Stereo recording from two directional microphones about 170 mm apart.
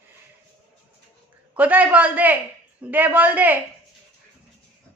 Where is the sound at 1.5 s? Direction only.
10° right (ahead or behind).